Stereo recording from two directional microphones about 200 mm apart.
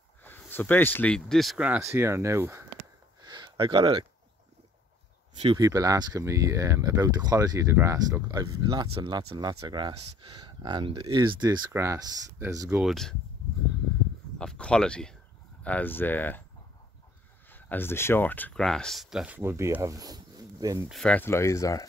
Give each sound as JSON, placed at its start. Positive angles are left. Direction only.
{"t": 0.2, "sound": "speech", "side_deg": 10}
{"t": 3.2, "sound": "a sound", "side_deg": -20}
{"t": 5.4, "sound": "speech", "side_deg": -20}
{"t": 14.4, "sound": "speech", "side_deg": 5}
{"t": 17.5, "sound": "speech", "side_deg": 10}
{"t": 20.9, "sound": "speech", "side_deg": 5}